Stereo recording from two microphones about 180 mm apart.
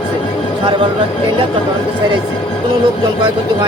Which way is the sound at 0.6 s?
25° right (ahead or behind).